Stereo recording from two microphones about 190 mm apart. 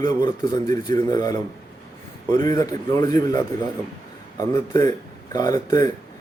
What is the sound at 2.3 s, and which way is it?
A man's voice, 20° left (ahead or behind).